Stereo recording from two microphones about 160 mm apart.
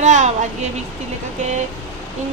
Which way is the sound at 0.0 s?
45° right (ahead or behind).